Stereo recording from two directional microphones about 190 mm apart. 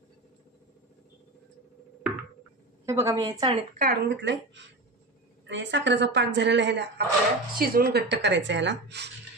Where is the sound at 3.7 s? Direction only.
50° right (ahead or behind); by 7.1 s 65° right (ahead or behind).